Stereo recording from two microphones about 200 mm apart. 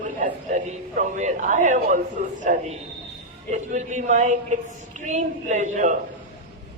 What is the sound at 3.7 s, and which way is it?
A man's voice, 35° right (ahead or behind).